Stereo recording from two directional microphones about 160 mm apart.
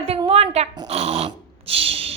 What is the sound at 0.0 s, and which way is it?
Pig, 35° right (ahead or behind).